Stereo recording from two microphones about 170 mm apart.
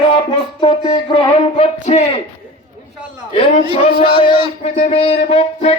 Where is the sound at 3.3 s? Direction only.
30° left (ahead or behind).